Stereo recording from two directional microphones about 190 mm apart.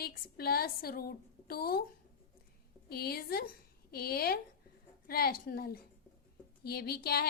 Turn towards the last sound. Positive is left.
turn(degrees=55)  # may be behind; listen again after turning